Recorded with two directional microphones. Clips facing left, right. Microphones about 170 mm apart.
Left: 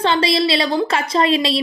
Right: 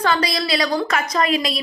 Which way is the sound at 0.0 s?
25° left (ahead or behind).